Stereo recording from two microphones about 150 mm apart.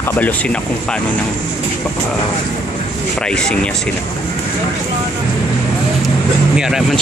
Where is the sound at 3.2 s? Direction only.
5° left (ahead or behind).